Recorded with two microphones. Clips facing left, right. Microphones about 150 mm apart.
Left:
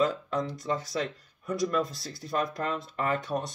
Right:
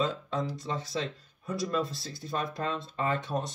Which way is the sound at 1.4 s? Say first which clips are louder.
Left 3 dB; 25° right (ahead or behind).